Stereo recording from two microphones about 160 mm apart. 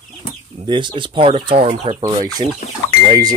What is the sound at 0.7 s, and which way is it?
Speech, 30° right (ahead or behind).